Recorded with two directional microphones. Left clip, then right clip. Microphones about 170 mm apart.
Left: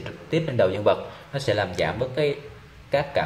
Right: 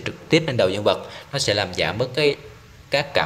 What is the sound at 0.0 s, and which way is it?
Speech, 40° right (ahead or behind).